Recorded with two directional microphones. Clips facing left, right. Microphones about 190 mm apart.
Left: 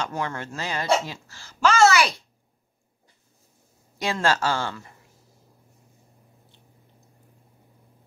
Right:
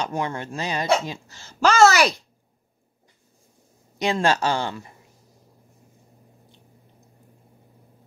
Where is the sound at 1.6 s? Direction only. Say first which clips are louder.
Right 2 dB; 40° right (ahead or behind).